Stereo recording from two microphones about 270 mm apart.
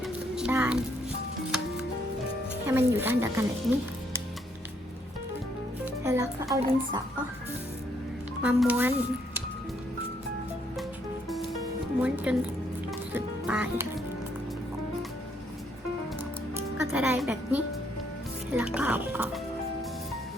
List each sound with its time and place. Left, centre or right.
0.0 s music: centre
2.6 s a woman's voice: centre
5.8 s music: centre
6.5 s a woman's voice: centre
8.4 s speech: centre
11.9 s speech: centre
16.6 s a woman's voice: centre